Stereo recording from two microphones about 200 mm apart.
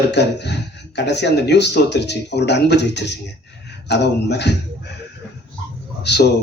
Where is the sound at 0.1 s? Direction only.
60° left (ahead or behind).